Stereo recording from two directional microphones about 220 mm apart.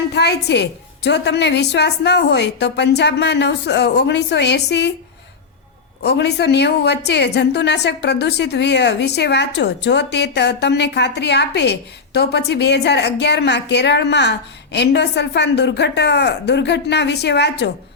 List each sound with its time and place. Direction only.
0.1 s a woman's voice: 50° left (ahead or behind)
6.0 s a woman's voice: 50° left (ahead or behind)